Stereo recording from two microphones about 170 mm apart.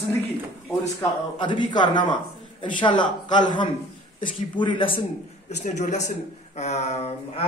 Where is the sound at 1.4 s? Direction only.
25° left (ahead or behind).